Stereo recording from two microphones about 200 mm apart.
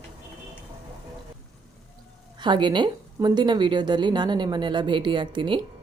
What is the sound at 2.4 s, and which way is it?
Speech, 25° right (ahead or behind).